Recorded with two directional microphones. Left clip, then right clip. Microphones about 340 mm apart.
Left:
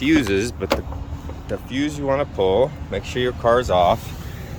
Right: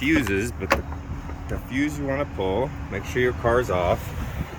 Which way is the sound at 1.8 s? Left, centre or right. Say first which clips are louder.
Even; left.